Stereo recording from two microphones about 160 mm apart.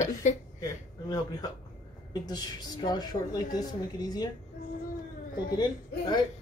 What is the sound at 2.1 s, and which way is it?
Speech, 25° left (ahead or behind).